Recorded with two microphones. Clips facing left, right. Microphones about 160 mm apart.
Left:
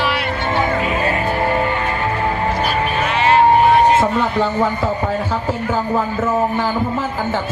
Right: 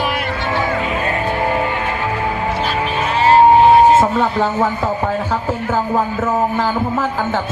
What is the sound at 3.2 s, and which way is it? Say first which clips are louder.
Vehicle: right 3 dB; 40° right (ahead or behind).